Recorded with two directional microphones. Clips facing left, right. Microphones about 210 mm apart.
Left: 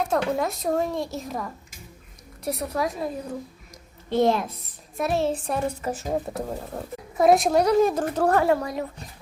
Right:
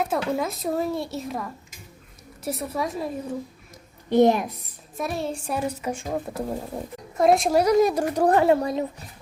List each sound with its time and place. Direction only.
0.0 s a woman's voice: centre (ahead or behind)
4.1 s speech: 15° right (ahead or behind)
4.9 s a woman's voice: centre (ahead or behind); by 8.9 s 25° right (ahead or behind)